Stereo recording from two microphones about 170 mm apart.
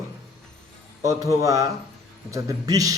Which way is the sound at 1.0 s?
20° right (ahead or behind).